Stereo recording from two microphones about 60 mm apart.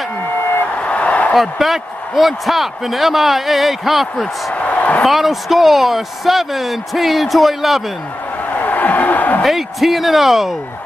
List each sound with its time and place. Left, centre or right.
0.7 s vehicle: left
1.3 s a man's voice: centre
4.6 s a sound: left
5.0 s a man's voice: centre
8.5 s a sound: left
9.4 s a man's voice: centre